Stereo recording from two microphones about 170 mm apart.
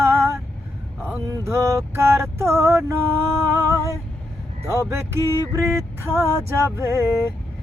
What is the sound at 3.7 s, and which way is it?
Vehicle, 15° right (ahead or behind).